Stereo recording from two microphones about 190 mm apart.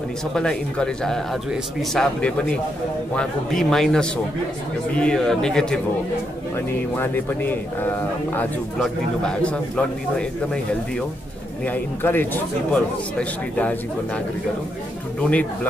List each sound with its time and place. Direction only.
0.3 s a man's voice: 5° left (ahead or behind)
7.0 s a man's voice: 10° left (ahead or behind)
15.2 s a man's voice: 5° left (ahead or behind)